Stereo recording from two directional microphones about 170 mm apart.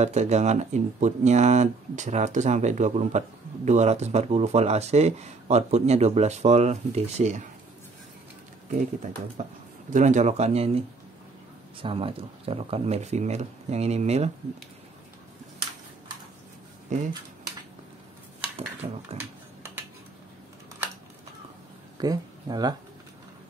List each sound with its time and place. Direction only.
0.0 s speech: 40° right (ahead or behind)
9.4 s speech: 45° right (ahead or behind)
11.8 s speech: 35° right (ahead or behind)
16.9 s speech: 45° right (ahead or behind)
18.8 s speech: 30° right (ahead or behind)
21.9 s speech: 25° right (ahead or behind)